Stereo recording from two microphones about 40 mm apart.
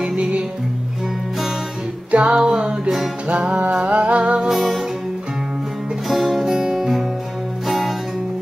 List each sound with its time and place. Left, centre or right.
0.0 s music: right
2.0 s music: right
2.3 s music: centre
3.7 s humming: right
4.2 s music: right
4.6 s music: centre
6.0 s music: centre